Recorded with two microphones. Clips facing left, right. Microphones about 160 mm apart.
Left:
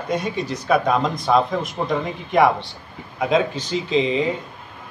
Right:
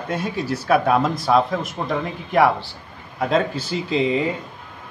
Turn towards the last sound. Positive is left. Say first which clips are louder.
# even
turn(degrees=-5)  # may be behind; listen again after turning